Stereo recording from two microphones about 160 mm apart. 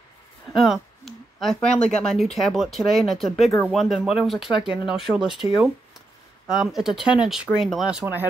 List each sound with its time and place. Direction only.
0.5 s speech: centre (ahead or behind)